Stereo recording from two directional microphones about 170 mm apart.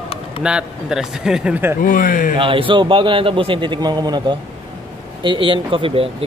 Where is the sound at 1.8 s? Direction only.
55° left (ahead or behind).